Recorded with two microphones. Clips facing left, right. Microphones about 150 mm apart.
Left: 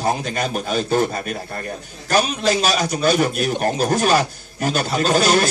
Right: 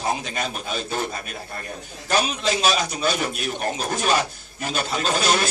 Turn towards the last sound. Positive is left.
turn(degrees=40)  # may be behind; listen again after turning